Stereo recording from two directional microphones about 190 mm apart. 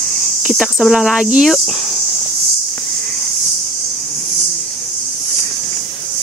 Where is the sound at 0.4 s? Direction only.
5° right (ahead or behind).